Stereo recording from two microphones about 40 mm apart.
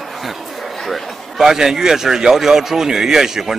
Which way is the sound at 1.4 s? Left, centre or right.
Centre.